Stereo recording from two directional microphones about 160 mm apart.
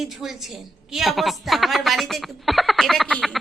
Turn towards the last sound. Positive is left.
turn(degrees=0)  # may be behind; listen again after turning